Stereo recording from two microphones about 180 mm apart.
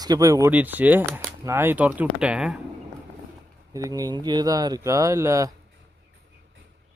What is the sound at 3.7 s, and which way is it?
A man's voice, 20° right (ahead or behind).